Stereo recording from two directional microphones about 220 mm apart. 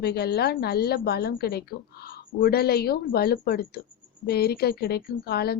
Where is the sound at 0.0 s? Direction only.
45° left (ahead or behind).